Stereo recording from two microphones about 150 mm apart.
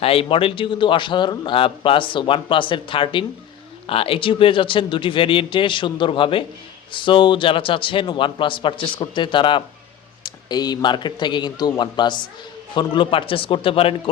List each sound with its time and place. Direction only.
0.0 s a man's voice: 40° left (ahead or behind)